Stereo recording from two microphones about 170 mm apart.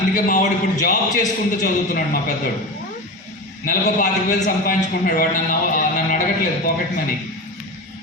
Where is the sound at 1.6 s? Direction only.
50° left (ahead or behind).